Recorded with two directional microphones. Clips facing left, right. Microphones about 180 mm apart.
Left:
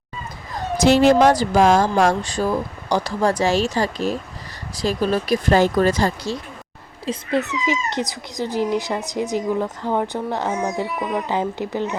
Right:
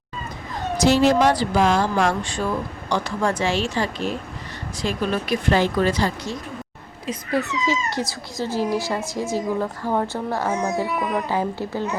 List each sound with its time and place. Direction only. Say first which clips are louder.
0.8 s speech: left 3 dB; 60° left (ahead or behind)
7.0 s speech: left 2 dB; 25° left (ahead or behind)